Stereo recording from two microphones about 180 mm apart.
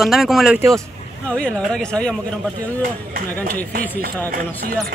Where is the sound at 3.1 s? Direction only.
50° right (ahead or behind).